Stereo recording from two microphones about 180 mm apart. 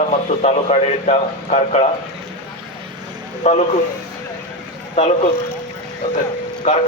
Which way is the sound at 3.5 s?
40° left (ahead or behind).